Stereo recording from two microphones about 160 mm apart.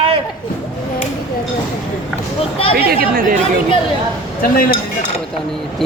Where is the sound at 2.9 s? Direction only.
65° right (ahead or behind).